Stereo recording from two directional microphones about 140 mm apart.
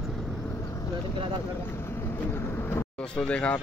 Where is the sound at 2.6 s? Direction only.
15° left (ahead or behind).